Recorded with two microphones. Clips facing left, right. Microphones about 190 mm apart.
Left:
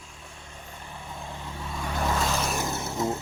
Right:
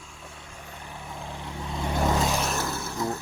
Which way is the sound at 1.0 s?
10° right (ahead or behind).